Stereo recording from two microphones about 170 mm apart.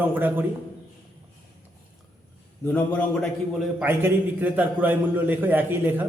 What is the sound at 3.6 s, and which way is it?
A man's voice, 10° right (ahead or behind).